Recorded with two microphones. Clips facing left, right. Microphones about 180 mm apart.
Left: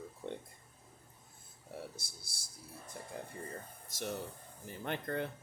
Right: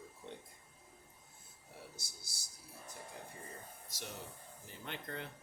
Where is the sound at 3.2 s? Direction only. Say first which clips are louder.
Left 6 dB; 55° left (ahead or behind).